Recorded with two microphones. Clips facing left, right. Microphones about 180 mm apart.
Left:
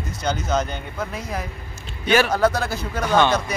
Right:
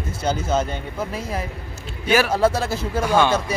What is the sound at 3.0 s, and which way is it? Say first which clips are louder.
Speech: even; 10° right (ahead or behind).